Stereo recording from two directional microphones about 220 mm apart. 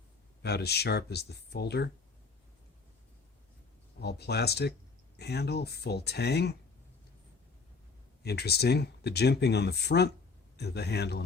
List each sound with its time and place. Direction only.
0.4 s speech: 50° left (ahead or behind)
4.0 s speech: 45° left (ahead or behind)
8.2 s speech: 45° left (ahead or behind)